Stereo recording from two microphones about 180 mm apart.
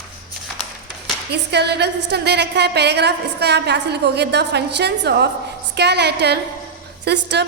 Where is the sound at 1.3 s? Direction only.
65° right (ahead or behind).